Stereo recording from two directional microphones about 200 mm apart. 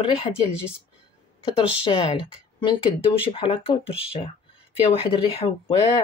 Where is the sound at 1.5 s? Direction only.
25° left (ahead or behind).